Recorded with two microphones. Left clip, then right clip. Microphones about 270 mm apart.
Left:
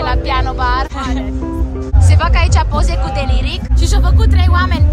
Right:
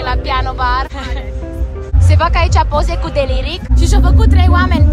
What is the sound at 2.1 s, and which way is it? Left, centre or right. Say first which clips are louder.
Speech: right 3 dB; centre.